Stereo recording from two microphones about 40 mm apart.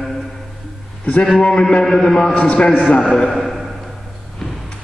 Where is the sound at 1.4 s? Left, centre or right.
Left.